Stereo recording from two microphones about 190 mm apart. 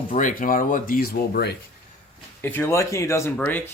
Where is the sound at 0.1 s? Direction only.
45° left (ahead or behind).